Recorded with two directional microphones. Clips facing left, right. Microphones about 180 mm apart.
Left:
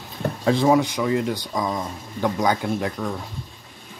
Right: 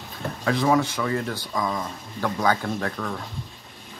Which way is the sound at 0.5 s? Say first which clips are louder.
Left 4 dB; 30° left (ahead or behind).